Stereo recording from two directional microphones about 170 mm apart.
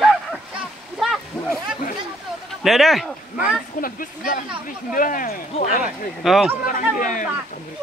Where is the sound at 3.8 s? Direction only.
55° left (ahead or behind).